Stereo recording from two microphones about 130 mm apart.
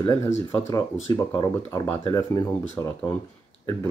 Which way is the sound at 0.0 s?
25° left (ahead or behind).